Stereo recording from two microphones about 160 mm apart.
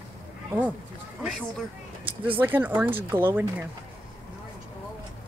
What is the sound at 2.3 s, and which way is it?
Speech, 10° right (ahead or behind).